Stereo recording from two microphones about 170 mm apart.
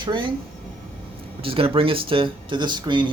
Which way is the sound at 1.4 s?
30° right (ahead or behind).